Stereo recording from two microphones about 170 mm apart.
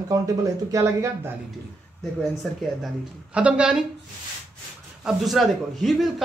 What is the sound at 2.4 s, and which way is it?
A man's voice, 5° left (ahead or behind).